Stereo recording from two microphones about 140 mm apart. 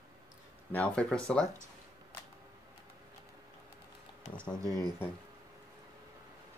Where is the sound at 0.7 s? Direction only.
10° left (ahead or behind).